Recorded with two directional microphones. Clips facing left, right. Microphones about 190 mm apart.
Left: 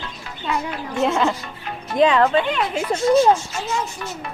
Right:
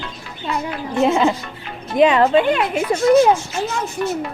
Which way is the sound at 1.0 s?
10° right (ahead or behind).